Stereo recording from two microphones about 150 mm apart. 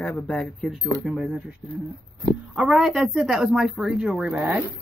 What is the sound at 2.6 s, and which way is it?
Speech, 5° right (ahead or behind).